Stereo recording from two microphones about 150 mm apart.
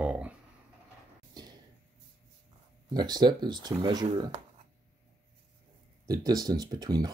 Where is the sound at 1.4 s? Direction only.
30° right (ahead or behind).